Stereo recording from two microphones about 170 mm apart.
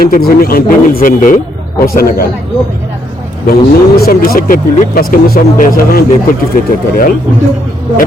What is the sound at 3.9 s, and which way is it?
A man's voice, 65° left (ahead or behind).